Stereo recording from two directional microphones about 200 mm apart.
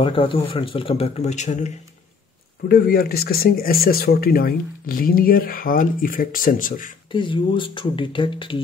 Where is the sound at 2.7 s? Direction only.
50° left (ahead or behind).